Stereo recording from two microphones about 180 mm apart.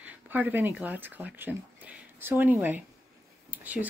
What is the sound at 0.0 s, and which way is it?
Speech, 10° right (ahead or behind).